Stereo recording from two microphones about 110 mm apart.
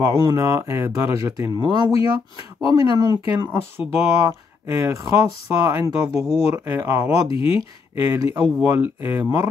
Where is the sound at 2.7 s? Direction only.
30° right (ahead or behind).